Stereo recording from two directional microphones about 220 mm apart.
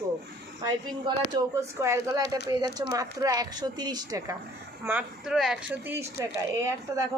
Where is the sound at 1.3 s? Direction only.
15° right (ahead or behind).